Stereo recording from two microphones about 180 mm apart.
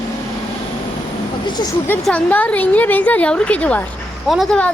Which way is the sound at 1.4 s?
25° left (ahead or behind).